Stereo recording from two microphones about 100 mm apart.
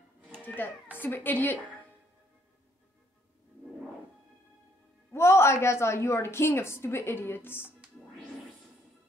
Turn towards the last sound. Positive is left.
turn(degrees=20)  # may be behind; listen again after turning